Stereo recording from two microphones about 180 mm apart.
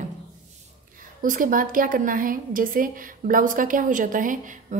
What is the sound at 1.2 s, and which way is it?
A woman's voice, 50° right (ahead or behind).